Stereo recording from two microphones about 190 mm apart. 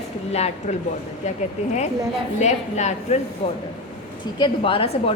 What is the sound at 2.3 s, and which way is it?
Speech, 35° left (ahead or behind).